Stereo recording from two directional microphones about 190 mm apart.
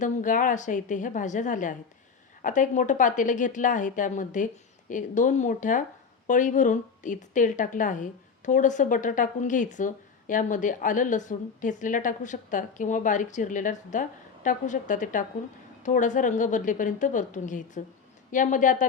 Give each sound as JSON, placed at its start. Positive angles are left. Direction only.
{"t": 0.0, "sound": "a woman's voice", "side_deg": 45}